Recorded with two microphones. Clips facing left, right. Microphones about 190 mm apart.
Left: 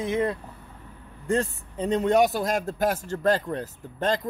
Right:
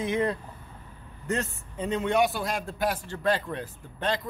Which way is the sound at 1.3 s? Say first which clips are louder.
Left 5 dB; 35° left (ahead or behind).